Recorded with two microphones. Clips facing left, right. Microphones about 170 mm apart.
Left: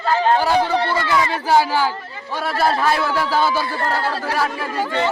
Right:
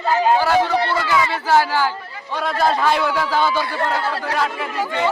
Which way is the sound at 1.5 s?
15° left (ahead or behind).